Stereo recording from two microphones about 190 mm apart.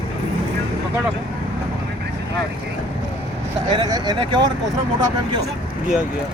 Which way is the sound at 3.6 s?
20° right (ahead or behind).